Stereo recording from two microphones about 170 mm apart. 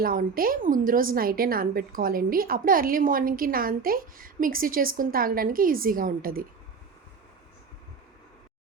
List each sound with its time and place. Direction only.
0.0 s a woman's voice: 55° right (ahead or behind)